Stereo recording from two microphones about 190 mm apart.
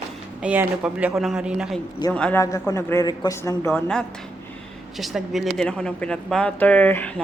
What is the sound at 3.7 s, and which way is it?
Speech, 5° left (ahead or behind).